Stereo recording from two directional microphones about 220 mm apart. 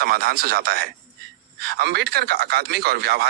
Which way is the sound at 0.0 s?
45° right (ahead or behind).